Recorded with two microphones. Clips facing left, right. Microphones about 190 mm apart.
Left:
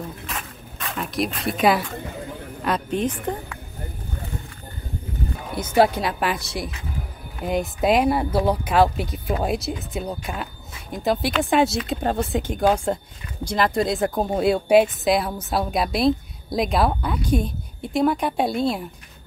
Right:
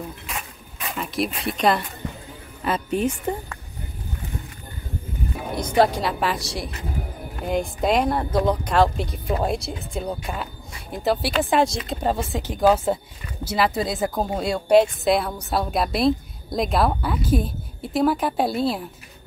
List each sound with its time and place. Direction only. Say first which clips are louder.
0.3 s a sound: left 1 dB; 5° right (ahead or behind)
2.6 s a woman's voice: right 1 dB; 5° right (ahead or behind)
5.6 s speech: left 1 dB; 5° left (ahead or behind)